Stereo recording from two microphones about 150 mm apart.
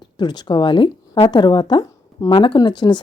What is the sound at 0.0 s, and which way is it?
Speech, 30° left (ahead or behind).